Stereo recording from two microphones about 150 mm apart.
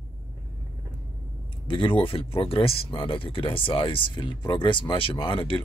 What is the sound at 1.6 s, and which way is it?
Speech, 35° left (ahead or behind).